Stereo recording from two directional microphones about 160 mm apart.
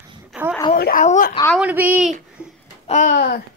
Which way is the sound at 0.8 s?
65° left (ahead or behind).